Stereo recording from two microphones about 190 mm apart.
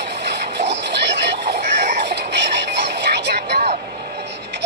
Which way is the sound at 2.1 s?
65° right (ahead or behind).